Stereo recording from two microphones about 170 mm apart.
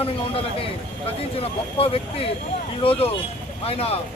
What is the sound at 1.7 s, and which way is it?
Speech, 35° left (ahead or behind).